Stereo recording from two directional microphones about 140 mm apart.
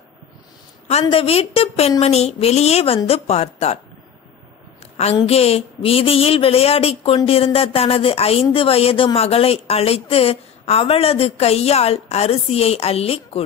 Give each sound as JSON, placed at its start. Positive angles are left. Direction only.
{"t": 0.8, "sound": "speech", "side_deg": 45}
{"t": 5.2, "sound": "speech", "side_deg": 45}